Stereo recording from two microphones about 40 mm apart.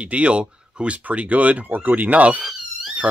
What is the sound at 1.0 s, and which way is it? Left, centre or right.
Speech, right.